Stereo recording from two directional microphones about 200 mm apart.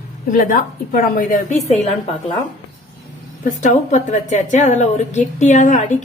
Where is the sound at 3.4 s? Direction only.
40° left (ahead or behind).